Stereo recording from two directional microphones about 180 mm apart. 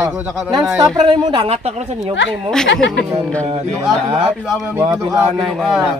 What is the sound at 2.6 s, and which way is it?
Speech, 90° left.